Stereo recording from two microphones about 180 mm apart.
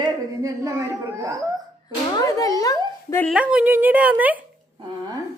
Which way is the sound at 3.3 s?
5° right (ahead or behind).